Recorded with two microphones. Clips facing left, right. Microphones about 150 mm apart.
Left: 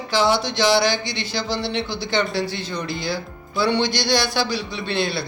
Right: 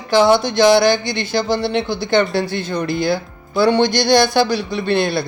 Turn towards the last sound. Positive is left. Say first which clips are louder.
# right 6 dB
turn(degrees=-50)  # may be behind; listen again after turning